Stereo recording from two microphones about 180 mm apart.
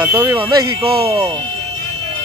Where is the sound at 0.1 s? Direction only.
15° right (ahead or behind).